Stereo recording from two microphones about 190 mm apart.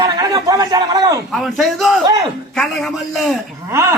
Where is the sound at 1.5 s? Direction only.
Centre (ahead or behind).